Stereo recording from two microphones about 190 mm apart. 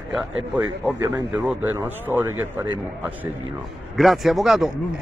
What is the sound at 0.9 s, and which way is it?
Speech, 20° right (ahead or behind).